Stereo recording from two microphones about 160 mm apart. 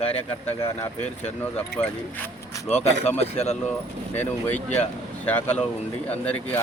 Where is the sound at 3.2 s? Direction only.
40° left (ahead or behind).